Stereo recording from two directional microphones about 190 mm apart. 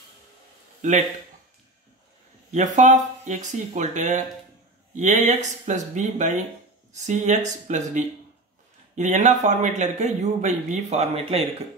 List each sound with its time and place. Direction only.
0.8 s speech: 40° right (ahead or behind)
2.5 s speech: 40° right (ahead or behind)